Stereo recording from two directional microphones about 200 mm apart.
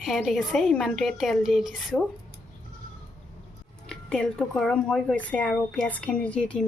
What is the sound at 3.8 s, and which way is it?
Speech, 5° left (ahead or behind).